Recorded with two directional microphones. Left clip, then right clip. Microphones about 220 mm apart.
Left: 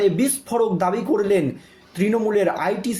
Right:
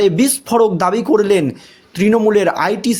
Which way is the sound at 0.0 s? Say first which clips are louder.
Right 6 dB; 45° right (ahead or behind).